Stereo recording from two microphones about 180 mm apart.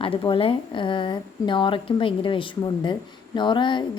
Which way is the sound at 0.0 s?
30° left (ahead or behind).